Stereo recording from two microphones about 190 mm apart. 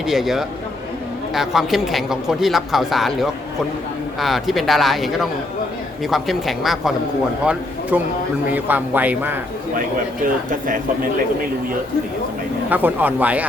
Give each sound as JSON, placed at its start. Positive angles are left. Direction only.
{"t": 0.1, "sound": "speech", "side_deg": 0}
{"t": 12.7, "sound": "speech", "side_deg": -10}